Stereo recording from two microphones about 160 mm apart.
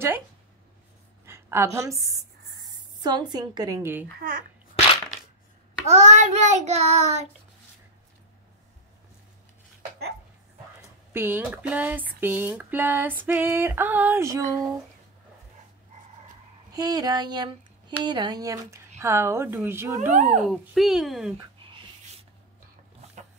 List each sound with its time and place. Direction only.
1.2 s a woman's voice: 15° right (ahead or behind)
4.2 s a child's voice: 60° right (ahead or behind)
5.9 s child singing: 45° right (ahead or behind)
11.1 s female singing: 15° right (ahead or behind)
16.7 s speech: 25° right (ahead or behind)
18.9 s female singing: 15° right (ahead or behind)
20.0 s child singing: 50° right (ahead or behind)
20.4 s a child's voice: centre (ahead or behind)
21.6 s a sound: 35° right (ahead or behind)